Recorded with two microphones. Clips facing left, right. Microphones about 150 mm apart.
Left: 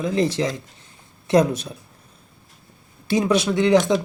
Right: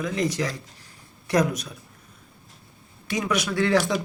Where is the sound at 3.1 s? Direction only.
30° left (ahead or behind).